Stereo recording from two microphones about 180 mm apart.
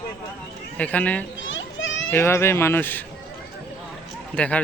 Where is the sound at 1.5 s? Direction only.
90° left.